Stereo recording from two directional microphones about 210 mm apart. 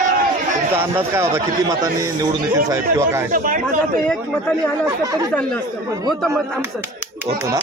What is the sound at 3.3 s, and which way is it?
Speech, 40° right (ahead or behind).